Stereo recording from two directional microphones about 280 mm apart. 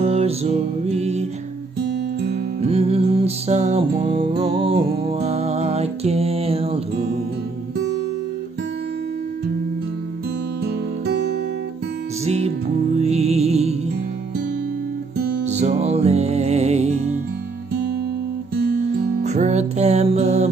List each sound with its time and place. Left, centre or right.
0.0 s music: right
1.8 s music: right
2.6 s music: right
10.6 s music: right
12.3 s music: right
15.4 s music: right
19.2 s music: right